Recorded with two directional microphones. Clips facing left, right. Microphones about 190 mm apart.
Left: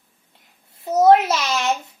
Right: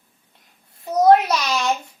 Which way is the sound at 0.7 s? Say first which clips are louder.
Even; 25° left (ahead or behind).